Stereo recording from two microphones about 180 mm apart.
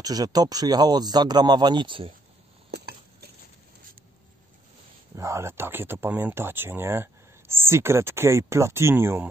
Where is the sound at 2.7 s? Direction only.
60° right (ahead or behind).